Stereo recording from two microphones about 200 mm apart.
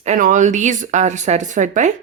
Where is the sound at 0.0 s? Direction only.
40° right (ahead or behind).